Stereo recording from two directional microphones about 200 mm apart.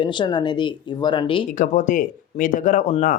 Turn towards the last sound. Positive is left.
turn(degrees=40)  # may be behind; listen again after turning